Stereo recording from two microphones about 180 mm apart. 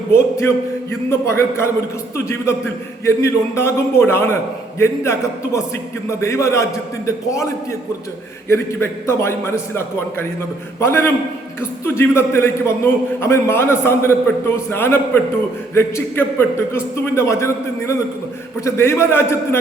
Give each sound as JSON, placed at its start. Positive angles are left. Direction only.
{"t": 0.1, "sound": "a man's voice", "side_deg": 15}